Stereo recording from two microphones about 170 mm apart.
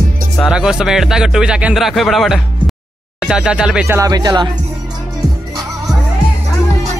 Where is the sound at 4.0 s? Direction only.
25° right (ahead or behind).